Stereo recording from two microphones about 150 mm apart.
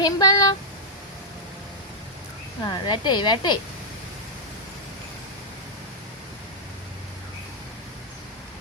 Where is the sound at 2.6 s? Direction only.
30° left (ahead or behind).